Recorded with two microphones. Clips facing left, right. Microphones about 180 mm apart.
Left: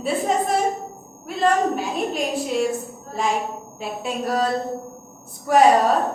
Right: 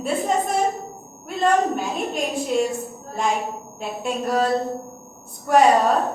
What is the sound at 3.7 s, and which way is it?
Speech, centre (ahead or behind).